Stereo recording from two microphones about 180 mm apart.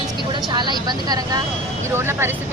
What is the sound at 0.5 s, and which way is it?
Speech, 25° right (ahead or behind).